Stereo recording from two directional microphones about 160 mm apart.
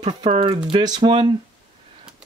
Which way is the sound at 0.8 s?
25° right (ahead or behind).